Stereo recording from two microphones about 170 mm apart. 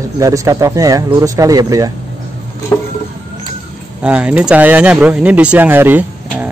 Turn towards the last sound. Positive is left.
turn(degrees=-10)  # may be behind; listen again after turning